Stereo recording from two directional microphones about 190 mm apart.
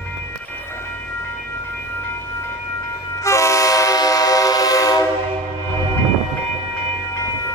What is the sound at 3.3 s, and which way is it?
Train, 15° left (ahead or behind).